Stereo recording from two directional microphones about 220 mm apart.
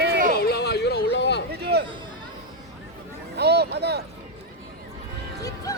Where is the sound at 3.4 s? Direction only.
50° right (ahead or behind).